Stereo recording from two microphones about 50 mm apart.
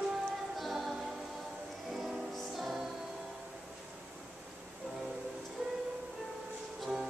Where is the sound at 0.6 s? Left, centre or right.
Centre.